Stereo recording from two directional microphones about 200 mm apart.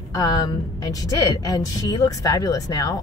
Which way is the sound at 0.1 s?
20° left (ahead or behind).